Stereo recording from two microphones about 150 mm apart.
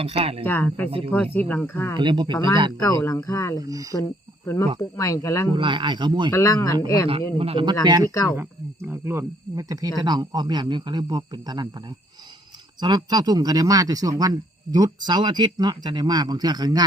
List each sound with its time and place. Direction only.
0.0 s speech: 40° right (ahead or behind)
0.4 s speech: 10° left (ahead or behind)
0.9 s speech: 35° right (ahead or behind)
1.1 s speech: 10° left (ahead or behind)
2.0 s speech: 30° right (ahead or behind)
2.8 s speech: 20° left (ahead or behind)
3.6 s speech: 20° right (ahead or behind)
3.9 s speech: 20° left (ahead or behind)
5.5 s speech: 35° right (ahead or behind)
6.3 s speech: 20° left (ahead or behind)
7.3 s speech: 40° right (ahead or behind)
8.1 s speech: 20° left (ahead or behind)
8.4 s speech: 15° right (ahead or behind)
12.8 s speech: 30° right (ahead or behind)